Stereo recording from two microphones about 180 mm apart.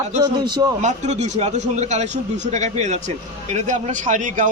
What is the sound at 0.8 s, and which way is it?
A man's voice, 40° right (ahead or behind).